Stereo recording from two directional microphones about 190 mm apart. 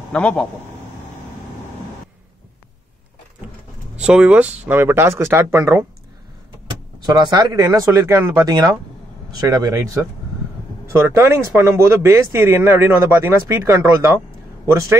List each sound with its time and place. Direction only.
0.1 s speech: 5° left (ahead or behind)
4.0 s speech: 5° right (ahead or behind)
7.0 s speech: 20° right (ahead or behind)